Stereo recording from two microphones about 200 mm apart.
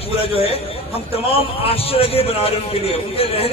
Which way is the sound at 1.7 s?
30° left (ahead or behind).